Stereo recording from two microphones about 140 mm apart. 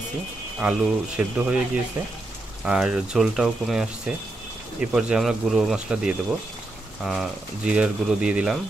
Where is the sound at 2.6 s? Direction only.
5° right (ahead or behind).